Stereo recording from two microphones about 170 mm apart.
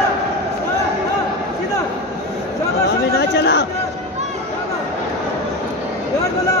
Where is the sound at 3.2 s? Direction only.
90° left.